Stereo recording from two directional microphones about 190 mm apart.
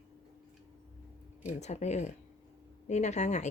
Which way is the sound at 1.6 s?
35° left (ahead or behind).